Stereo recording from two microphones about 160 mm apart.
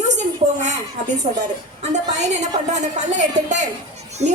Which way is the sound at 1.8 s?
45° right (ahead or behind).